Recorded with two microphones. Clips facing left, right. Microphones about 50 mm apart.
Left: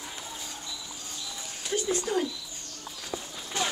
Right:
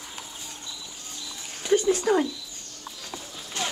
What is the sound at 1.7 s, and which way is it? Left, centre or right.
Speech, right.